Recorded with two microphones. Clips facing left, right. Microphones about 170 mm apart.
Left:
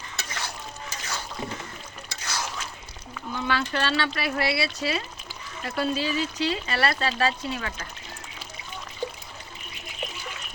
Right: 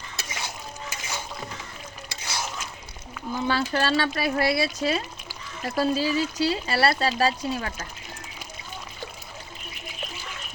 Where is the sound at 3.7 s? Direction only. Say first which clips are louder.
Right 3 dB; 40° right (ahead or behind).